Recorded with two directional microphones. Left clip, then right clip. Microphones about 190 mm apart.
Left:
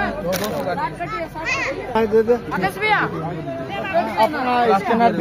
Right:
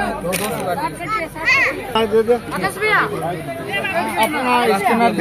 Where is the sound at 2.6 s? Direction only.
45° left (ahead or behind).